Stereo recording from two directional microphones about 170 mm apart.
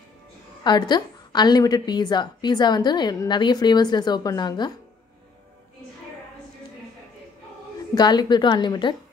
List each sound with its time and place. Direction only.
0.7 s a woman's voice: 25° left (ahead or behind)
7.9 s a woman's voice: 25° left (ahead or behind)